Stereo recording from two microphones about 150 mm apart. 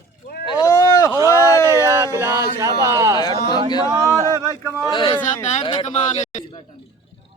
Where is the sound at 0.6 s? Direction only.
20° left (ahead or behind).